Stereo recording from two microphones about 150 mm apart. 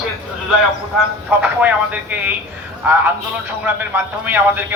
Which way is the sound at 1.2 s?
10° right (ahead or behind).